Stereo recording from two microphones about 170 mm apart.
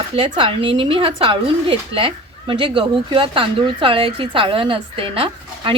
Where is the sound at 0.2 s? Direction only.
30° right (ahead or behind).